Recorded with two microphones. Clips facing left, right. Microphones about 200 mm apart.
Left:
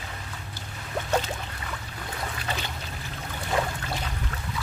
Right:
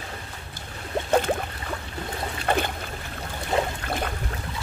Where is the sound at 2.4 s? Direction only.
55° right (ahead or behind).